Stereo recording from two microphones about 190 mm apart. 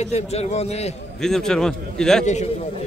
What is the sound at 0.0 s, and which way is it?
Speech, 35° left (ahead or behind).